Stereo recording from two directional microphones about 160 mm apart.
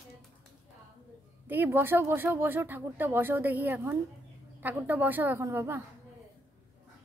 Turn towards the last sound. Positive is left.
turn(degrees=-15)  # may be behind; listen again after turning